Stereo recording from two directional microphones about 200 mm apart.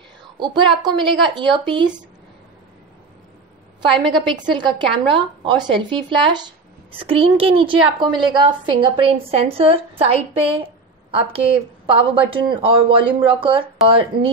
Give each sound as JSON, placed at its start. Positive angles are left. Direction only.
{"t": 0.4, "sound": "a woman's voice", "side_deg": -20}
{"t": 3.9, "sound": "a woman's voice", "side_deg": -25}